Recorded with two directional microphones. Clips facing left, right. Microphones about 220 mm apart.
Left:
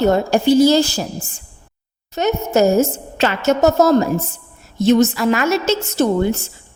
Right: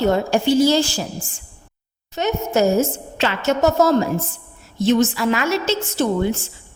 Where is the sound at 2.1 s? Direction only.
40° left (ahead or behind).